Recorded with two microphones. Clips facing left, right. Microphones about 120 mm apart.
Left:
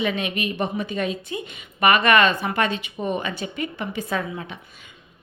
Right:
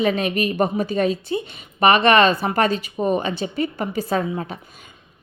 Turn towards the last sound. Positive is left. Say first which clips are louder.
# right 5 dB
turn(degrees=-35)  # may be behind; listen again after turning